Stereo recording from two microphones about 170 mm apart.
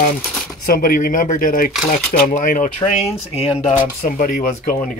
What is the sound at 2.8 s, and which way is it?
Speech, 40° left (ahead or behind).